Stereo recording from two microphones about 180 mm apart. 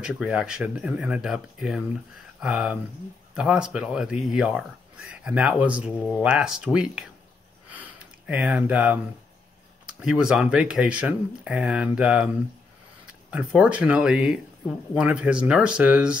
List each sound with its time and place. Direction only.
0.0 s speech: 5° right (ahead or behind)
5.9 s speech: 10° left (ahead or behind)
6.2 s speech: 5° right (ahead or behind)
7.7 s a sound: 10° right (ahead or behind)
9.8 s speech: 5° right (ahead or behind)